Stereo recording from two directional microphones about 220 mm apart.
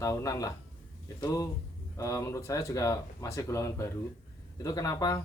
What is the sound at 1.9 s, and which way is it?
Speech, 15° left (ahead or behind).